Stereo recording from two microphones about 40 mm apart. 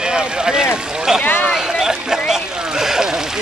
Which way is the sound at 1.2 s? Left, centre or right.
Left.